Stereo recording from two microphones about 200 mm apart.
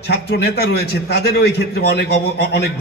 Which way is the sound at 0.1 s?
55° left (ahead or behind).